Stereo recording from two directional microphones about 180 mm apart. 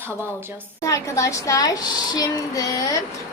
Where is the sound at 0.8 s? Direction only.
15° left (ahead or behind).